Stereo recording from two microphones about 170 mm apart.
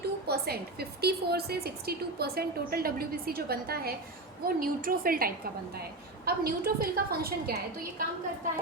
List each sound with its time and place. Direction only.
0.0 s a woman's voice: 70° right (ahead or behind)